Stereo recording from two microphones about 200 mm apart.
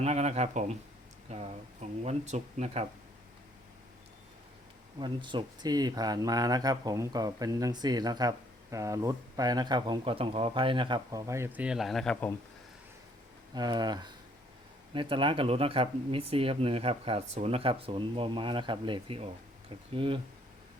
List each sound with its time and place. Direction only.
0.0 s speech: 30° right (ahead or behind)
4.9 s speech: 25° right (ahead or behind); by 12.3 s 5° left (ahead or behind)
13.5 s speech: 20° right (ahead or behind)